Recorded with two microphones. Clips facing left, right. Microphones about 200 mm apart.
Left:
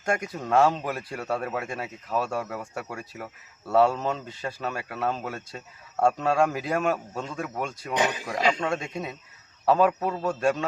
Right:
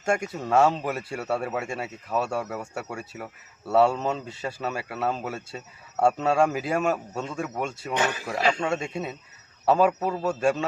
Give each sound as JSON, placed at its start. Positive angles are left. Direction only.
{"t": 0.0, "sound": "speech", "side_deg": -5}
{"t": 7.9, "sound": "speech", "side_deg": 15}
{"t": 8.6, "sound": "speech", "side_deg": -5}